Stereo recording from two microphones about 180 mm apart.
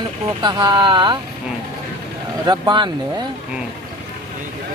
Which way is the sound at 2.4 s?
25° right (ahead or behind).